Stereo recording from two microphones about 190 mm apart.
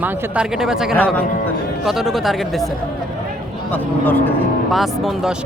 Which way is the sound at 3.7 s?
10° left (ahead or behind).